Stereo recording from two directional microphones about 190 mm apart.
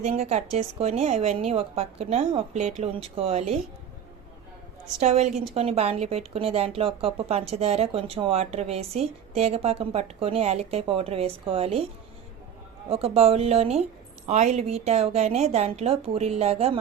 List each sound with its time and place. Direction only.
0.0 s a woman's voice: 35° right (ahead or behind)
4.9 s a woman's voice: 35° right (ahead or behind)
12.9 s a woman's voice: 30° right (ahead or behind)